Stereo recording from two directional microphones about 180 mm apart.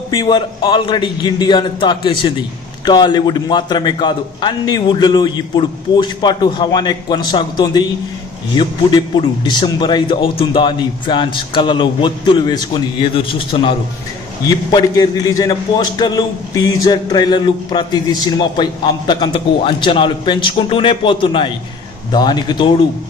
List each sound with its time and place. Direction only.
0.1 s a man's voice: 25° left (ahead or behind)